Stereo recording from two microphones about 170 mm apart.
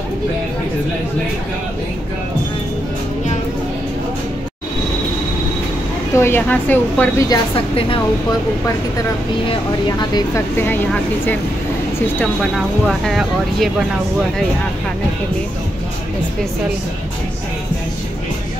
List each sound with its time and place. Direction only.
6.1 s speech: 15° left (ahead or behind)
7.2 s a woman's voice: 30° left (ahead or behind)
9.5 s speech: 25° left (ahead or behind)
12.5 s speech: centre (ahead or behind)